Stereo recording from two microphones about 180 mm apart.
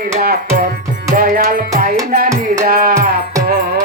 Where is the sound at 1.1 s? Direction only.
50° right (ahead or behind).